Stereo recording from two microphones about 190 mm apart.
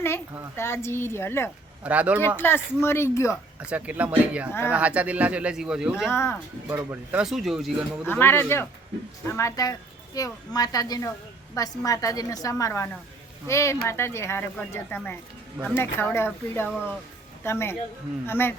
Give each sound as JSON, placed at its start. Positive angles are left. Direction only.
{"t": 0.5, "sound": "a woman's voice", "side_deg": 15}
{"t": 1.8, "sound": "speech", "side_deg": -5}
{"t": 2.1, "sound": "a woman's voice", "side_deg": 10}
{"t": 3.7, "sound": "speech", "side_deg": -10}
{"t": 6.1, "sound": "a woman's voice", "side_deg": 15}
{"t": 6.7, "sound": "speech", "side_deg": -10}
{"t": 8.0, "sound": "a woman's voice", "side_deg": 10}